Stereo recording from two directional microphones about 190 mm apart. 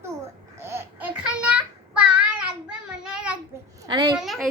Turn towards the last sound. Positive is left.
turn(degrees=0)  # may be behind; listen again after turning